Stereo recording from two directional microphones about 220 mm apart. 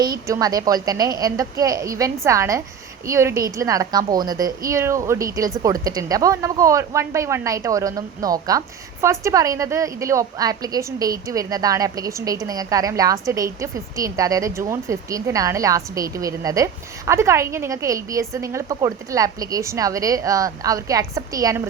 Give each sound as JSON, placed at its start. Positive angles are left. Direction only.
{"t": 0.0, "sound": "a woman's voice", "side_deg": -15}